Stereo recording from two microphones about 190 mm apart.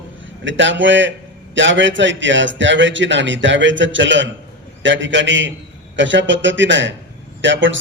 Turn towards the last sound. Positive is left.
turn(degrees=-75)  # may be behind; listen again after turning